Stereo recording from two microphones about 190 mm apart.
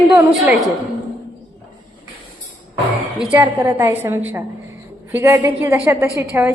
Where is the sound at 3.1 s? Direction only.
10° right (ahead or behind).